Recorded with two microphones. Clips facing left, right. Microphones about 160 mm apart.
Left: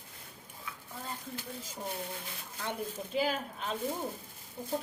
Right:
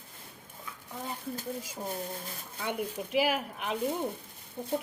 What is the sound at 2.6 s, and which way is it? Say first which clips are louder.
A woman's voice: right 4 dB; 15° right (ahead or behind).